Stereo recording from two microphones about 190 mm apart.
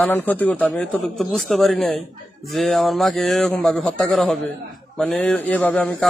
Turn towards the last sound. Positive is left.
turn(degrees=5)  # may be behind; listen again after turning